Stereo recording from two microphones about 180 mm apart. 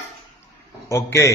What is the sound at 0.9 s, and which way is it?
Speech, 15° left (ahead or behind).